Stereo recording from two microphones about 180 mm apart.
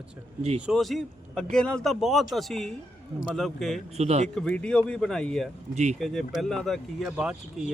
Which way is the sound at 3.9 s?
35° right (ahead or behind).